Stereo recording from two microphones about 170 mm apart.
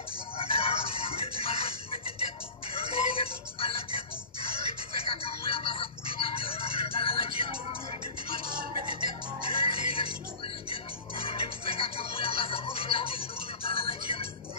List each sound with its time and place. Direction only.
0.4 s music: 35° left (ahead or behind)
5.0 s music: 35° left (ahead or behind)
9.5 s music: 30° left (ahead or behind)
11.2 s music: 35° left (ahead or behind)